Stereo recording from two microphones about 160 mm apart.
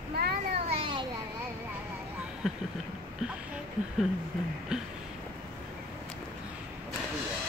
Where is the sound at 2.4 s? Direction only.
Centre (ahead or behind).